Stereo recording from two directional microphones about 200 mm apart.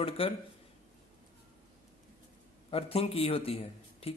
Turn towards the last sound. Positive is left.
turn(degrees=30)  # may be behind; listen again after turning